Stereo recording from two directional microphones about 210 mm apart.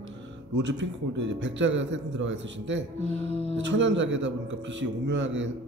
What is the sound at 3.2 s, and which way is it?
Music, 30° left (ahead or behind).